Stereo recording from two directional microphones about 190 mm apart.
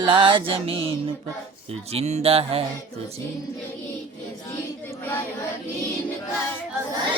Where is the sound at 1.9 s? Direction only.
35° right (ahead or behind).